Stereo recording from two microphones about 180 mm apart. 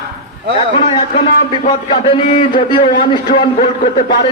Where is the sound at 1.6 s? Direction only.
30° left (ahead or behind).